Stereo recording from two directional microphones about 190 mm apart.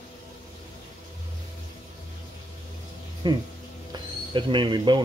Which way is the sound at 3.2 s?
20° right (ahead or behind).